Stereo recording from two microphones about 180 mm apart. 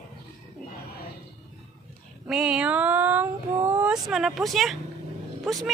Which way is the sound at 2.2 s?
5° right (ahead or behind).